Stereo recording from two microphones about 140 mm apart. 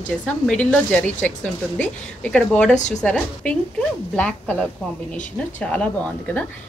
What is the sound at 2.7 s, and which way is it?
Speech, 60° left (ahead or behind).